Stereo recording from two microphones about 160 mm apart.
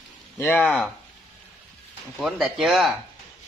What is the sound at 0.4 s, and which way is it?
Speech, 10° left (ahead or behind).